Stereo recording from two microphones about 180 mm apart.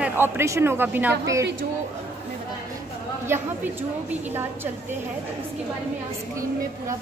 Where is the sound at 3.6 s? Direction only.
10° right (ahead or behind).